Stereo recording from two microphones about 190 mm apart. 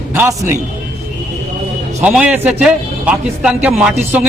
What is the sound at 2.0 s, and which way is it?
A man's voice, 5° right (ahead or behind).